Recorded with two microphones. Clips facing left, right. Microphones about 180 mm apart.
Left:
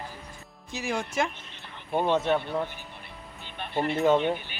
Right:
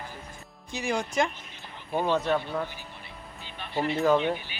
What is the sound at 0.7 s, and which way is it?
Speech, 5° left (ahead or behind).